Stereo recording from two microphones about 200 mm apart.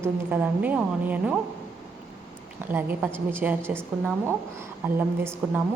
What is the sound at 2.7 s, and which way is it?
A woman's voice, 10° right (ahead or behind).